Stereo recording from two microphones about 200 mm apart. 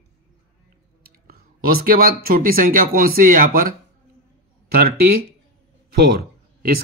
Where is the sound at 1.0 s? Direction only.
50° right (ahead or behind).